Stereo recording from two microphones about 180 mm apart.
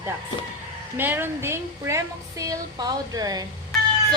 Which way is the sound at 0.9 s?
10° right (ahead or behind).